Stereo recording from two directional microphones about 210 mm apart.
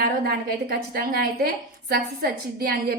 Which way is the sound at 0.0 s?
45° right (ahead or behind).